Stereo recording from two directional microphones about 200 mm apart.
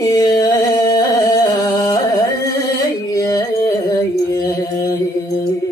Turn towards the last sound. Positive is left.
turn(degrees=15)  # may be behind; listen again after turning